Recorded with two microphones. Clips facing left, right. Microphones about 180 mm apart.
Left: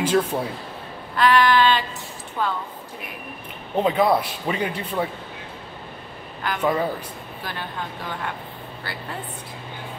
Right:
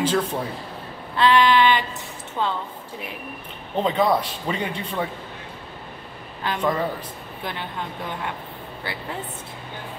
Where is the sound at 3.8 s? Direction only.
10° left (ahead or behind).